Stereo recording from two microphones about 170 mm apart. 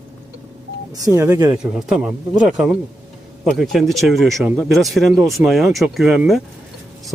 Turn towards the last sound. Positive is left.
turn(degrees=0)  # may be behind; listen again after turning